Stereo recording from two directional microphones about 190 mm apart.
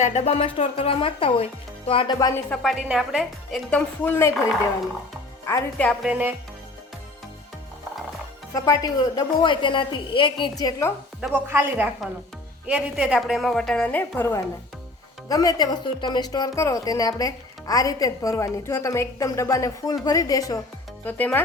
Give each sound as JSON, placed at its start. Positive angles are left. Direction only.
{"t": 0.0, "sound": "a woman's voice", "side_deg": 35}
{"t": 2.1, "sound": "speech", "side_deg": 15}
{"t": 2.6, "sound": "a woman's voice", "side_deg": 0}
{"t": 5.7, "sound": "a woman's voice", "side_deg": 5}
{"t": 8.5, "sound": "a woman's voice", "side_deg": 20}
{"t": 11.2, "sound": "a woman's voice", "side_deg": -10}
{"t": 21.0, "sound": "speech", "side_deg": 10}